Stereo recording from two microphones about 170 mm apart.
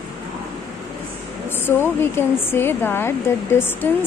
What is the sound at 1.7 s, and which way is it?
Speech, 15° left (ahead or behind).